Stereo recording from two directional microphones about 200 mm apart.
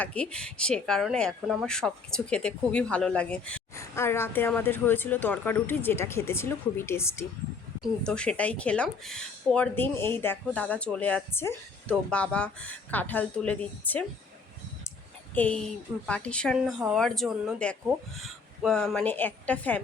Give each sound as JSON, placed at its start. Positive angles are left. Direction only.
{"t": 0.0, "sound": "speech", "side_deg": 5}
{"t": 15.4, "sound": "a woman's voice", "side_deg": 5}